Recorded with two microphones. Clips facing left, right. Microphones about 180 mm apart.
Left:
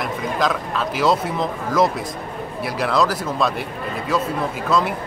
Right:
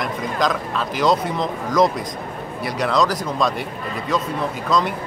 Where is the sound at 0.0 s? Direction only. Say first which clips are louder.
Even; centre (ahead or behind).